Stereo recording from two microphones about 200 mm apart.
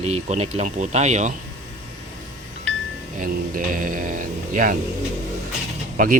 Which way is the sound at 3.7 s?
45° right (ahead or behind).